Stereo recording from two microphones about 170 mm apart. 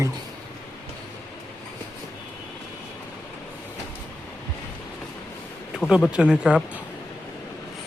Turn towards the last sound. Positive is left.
turn(degrees=-5)  # may be behind; listen again after turning